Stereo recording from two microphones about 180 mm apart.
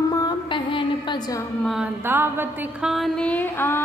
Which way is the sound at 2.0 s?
10° right (ahead or behind).